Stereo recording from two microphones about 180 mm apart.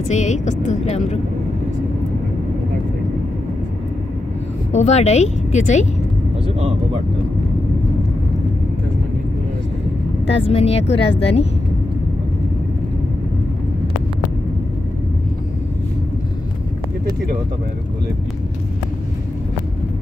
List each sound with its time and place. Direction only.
0.1 s speech: 40° left (ahead or behind)
4.7 s speech: 40° left (ahead or behind)
6.4 s speech: 30° right (ahead or behind)
10.4 s speech: 35° left (ahead or behind)